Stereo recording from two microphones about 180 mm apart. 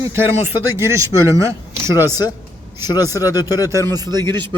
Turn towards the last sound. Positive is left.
turn(degrees=-25)  # may be behind; listen again after turning